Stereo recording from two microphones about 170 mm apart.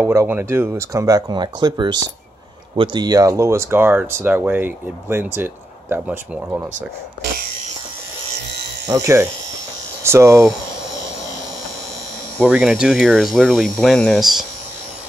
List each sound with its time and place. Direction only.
0.0 s speech: 15° right (ahead or behind)
8.8 s speech: 20° right (ahead or behind)
12.4 s speech: 10° right (ahead or behind)